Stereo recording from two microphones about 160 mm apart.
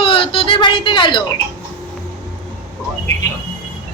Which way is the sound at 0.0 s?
35° left (ahead or behind).